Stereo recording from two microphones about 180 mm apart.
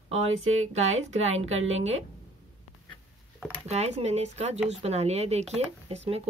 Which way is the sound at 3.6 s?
40° right (ahead or behind).